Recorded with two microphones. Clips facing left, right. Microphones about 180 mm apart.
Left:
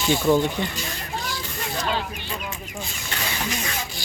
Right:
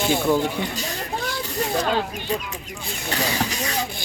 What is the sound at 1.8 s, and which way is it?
Speech, 45° right (ahead or behind).